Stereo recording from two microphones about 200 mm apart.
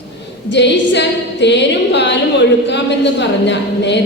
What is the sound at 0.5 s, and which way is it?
A woman's voice, 60° left (ahead or behind).